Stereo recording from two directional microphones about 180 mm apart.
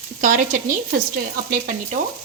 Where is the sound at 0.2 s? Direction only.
45° right (ahead or behind).